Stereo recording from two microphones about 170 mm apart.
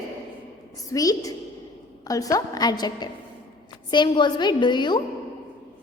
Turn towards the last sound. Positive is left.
turn(degrees=25)  # may be behind; listen again after turning